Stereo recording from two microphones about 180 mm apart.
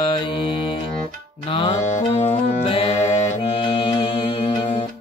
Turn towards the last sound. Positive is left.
turn(degrees=30)  # may be behind; listen again after turning